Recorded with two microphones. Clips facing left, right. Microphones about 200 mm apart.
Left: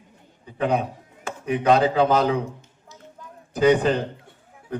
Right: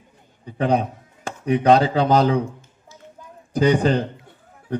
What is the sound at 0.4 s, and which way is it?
A man's voice, 35° right (ahead or behind).